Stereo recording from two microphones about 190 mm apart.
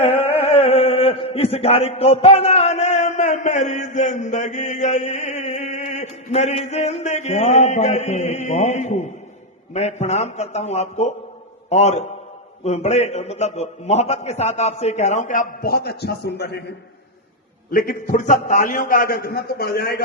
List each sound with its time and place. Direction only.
0.0 s a man's voice: 30° left (ahead or behind); by 20.0 s 55° left (ahead or behind)